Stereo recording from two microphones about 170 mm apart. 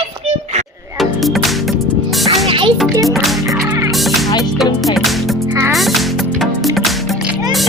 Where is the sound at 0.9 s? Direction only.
Centre (ahead or behind).